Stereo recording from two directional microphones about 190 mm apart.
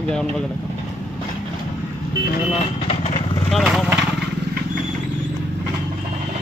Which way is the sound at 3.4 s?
Centre (ahead or behind).